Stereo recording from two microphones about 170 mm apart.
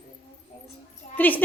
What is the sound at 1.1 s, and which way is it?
Speech, 10° left (ahead or behind).